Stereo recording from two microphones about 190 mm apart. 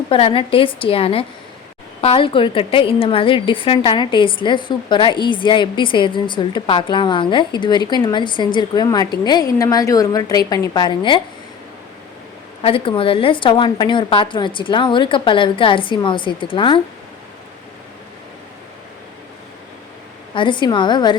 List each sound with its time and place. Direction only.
0.1 s a woman's voice: 30° left (ahead or behind)
12.6 s a woman's voice: 30° left (ahead or behind)
20.3 s a woman's voice: 25° left (ahead or behind)